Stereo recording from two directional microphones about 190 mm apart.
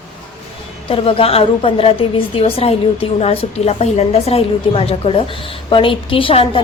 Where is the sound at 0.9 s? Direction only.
30° left (ahead or behind).